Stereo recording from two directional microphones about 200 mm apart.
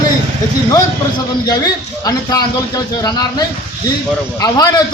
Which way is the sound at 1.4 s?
20° left (ahead or behind).